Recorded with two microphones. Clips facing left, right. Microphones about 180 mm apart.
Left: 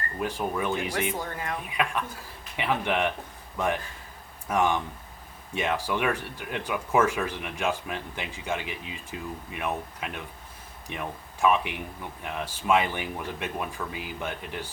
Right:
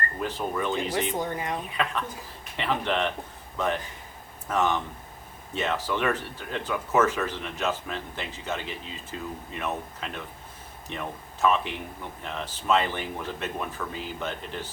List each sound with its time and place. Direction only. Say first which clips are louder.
0.2 s speech: left 2 dB; 10° left (ahead or behind)
1.1 s speech: right 3 dB; 20° right (ahead or behind)
1.7 s speech: even; 10° left (ahead or behind)
4.4 s speech: left 1 dB; 10° left (ahead or behind)